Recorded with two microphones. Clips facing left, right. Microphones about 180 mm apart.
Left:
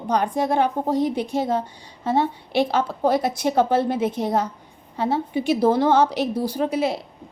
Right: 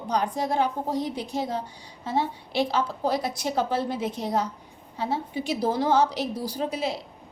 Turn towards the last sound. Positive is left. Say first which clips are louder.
# left 6 dB
turn(degrees=60)  # may be behind; listen again after turning